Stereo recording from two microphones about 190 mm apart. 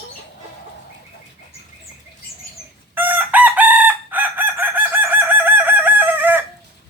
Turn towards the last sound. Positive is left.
turn(degrees=-10)  # may be behind; listen again after turning